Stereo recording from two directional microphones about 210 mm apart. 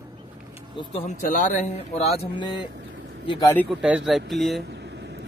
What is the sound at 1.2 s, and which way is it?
A man's voice, 35° left (ahead or behind).